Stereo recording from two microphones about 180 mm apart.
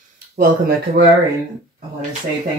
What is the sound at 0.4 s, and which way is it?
Speech, 60° right (ahead or behind).